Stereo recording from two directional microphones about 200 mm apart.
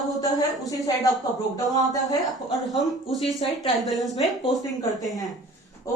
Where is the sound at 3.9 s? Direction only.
Centre (ahead or behind).